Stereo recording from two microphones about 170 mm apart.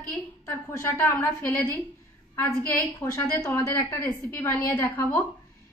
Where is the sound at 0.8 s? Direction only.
15° left (ahead or behind).